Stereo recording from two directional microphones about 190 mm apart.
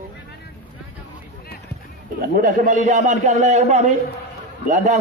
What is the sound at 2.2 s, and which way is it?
A man's voice, 50° right (ahead or behind).